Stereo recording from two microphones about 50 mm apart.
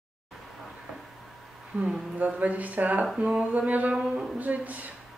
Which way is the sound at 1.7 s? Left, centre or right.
Right.